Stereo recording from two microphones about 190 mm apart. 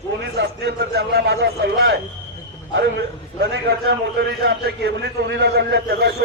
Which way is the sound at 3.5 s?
60° right (ahead or behind).